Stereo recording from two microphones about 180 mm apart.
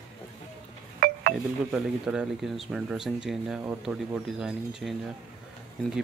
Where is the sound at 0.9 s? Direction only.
55° right (ahead or behind).